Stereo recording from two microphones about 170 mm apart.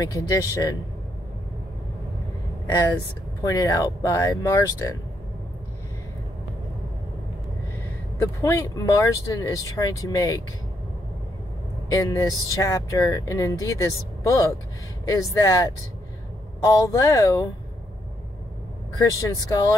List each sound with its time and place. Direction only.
0.0 s speech: 20° left (ahead or behind)
2.7 s speech: 25° left (ahead or behind)
8.2 s speech: 15° left (ahead or behind)
11.9 s speech: 20° left (ahead or behind)
18.9 s speech: 20° left (ahead or behind)